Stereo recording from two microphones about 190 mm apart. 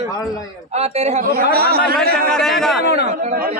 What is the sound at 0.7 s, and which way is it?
Speech, 35° right (ahead or behind).